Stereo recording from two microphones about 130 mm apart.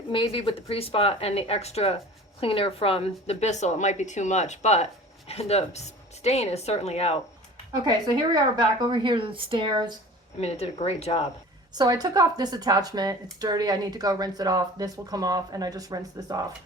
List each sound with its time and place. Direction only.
0.1 s a woman's voice: 40° left (ahead or behind)
7.9 s a woman's voice: 30° right (ahead or behind)
10.4 s speech: 55° left (ahead or behind)
11.7 s a woman's voice: 30° right (ahead or behind)